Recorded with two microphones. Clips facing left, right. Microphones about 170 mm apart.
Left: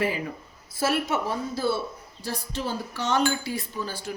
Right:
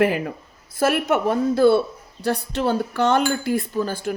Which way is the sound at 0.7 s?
55° right (ahead or behind).